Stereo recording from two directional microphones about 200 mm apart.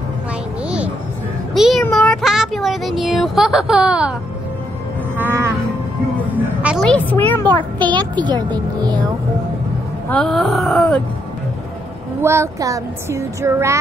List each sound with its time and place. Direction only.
0.7 s music: 5° right (ahead or behind)
1.5 s a sound: centre (ahead or behind)
5.1 s music: 10° right (ahead or behind)
6.6 s a child's voice: centre (ahead or behind)
7.8 s a child's voice: 20° right (ahead or behind)
10.0 s wail: 5° left (ahead or behind)
12.2 s speech: 15° right (ahead or behind)